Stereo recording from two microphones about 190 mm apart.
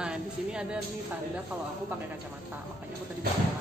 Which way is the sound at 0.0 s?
5° right (ahead or behind).